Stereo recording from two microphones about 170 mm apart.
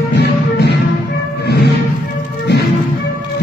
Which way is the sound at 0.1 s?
85° left.